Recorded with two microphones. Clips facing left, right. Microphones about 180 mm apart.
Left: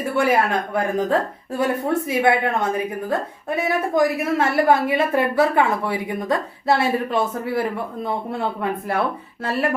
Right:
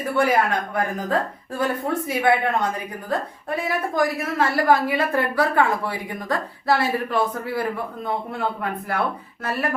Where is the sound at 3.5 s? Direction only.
20° left (ahead or behind).